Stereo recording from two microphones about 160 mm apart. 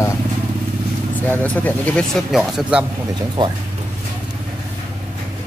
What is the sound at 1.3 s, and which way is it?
Speech, 10° left (ahead or behind).